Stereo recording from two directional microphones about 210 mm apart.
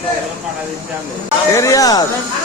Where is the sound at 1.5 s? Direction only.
15° left (ahead or behind).